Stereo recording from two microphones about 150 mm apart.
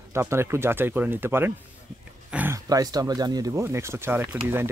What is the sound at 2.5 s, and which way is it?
Speech, 25° right (ahead or behind).